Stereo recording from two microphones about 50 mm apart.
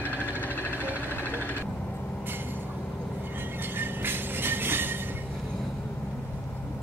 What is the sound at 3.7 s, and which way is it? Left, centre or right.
Train, right.